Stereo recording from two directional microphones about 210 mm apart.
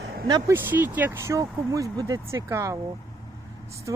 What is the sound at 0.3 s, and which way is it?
Speech, 15° right (ahead or behind).